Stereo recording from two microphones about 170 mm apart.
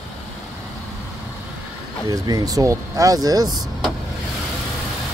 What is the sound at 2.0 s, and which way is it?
Speech, 20° right (ahead or behind).